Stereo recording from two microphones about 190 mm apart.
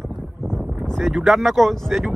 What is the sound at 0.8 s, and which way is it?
Speech, centre (ahead or behind).